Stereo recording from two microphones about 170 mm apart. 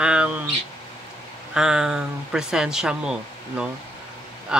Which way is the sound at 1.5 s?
5° right (ahead or behind).